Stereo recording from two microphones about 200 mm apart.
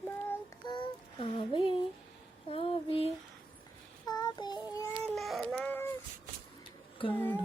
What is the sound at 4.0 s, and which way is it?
Child singing, 20° left (ahead or behind).